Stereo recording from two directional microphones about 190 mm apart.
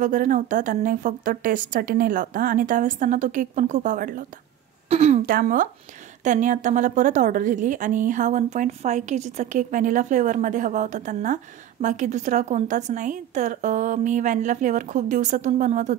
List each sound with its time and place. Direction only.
0.0 s speech: 45° right (ahead or behind)
4.8 s a sound: 35° right (ahead or behind)
5.2 s a woman's voice: 45° right (ahead or behind)